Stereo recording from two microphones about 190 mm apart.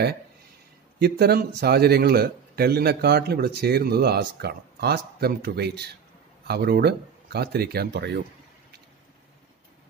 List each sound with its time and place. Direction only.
0.9 s speech: 55° right (ahead or behind)